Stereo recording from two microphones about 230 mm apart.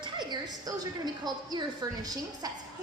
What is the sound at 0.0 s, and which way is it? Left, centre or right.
A woman's voice, centre.